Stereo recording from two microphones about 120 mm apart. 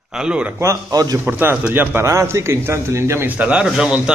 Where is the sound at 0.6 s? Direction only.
30° right (ahead or behind).